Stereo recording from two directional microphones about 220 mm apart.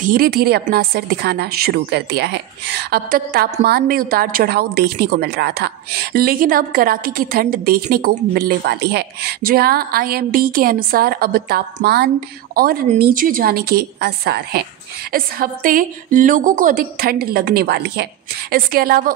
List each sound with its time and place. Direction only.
0.0 s a woman's voice: 40° right (ahead or behind)